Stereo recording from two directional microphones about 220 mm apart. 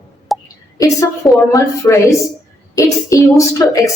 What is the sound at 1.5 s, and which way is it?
Speech, 15° left (ahead or behind).